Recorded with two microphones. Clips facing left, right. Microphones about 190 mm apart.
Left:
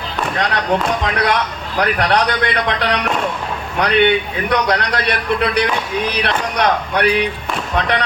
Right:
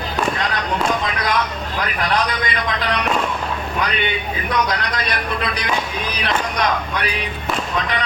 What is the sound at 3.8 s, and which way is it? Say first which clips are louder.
Speech: left 12 dB; 70° left (ahead or behind).